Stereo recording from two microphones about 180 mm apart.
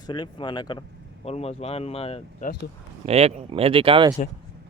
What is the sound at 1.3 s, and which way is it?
Speech, 35° left (ahead or behind).